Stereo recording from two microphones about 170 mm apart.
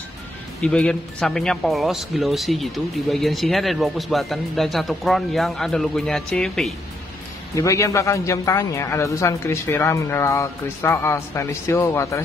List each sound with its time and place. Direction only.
0.6 s speech: 5° left (ahead or behind)
7.5 s speech: 20° left (ahead or behind)